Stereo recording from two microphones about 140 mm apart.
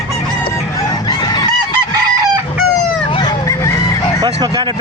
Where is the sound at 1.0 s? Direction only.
30° left (ahead or behind).